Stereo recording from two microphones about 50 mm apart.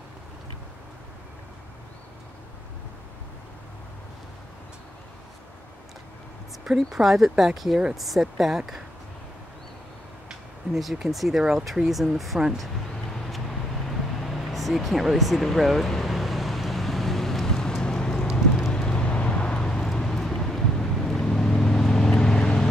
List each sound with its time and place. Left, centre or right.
6.8 s speech: centre
10.7 s speech: centre
13.1 s vehicle: centre
19.9 s vehicle: centre